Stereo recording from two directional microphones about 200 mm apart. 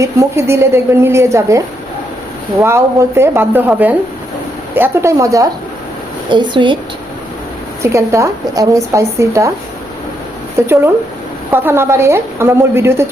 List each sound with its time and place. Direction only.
0.0 s a woman's voice: 15° right (ahead or behind)
7.8 s speech: 15° right (ahead or behind)
10.6 s speech: 15° right (ahead or behind)